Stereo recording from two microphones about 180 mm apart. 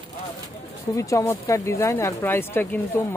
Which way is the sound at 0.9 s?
20° left (ahead or behind).